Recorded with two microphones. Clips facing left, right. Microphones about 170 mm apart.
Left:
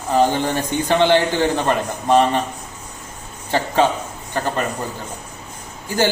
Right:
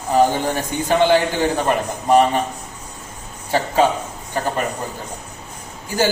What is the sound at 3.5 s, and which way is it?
Speech, 10° right (ahead or behind).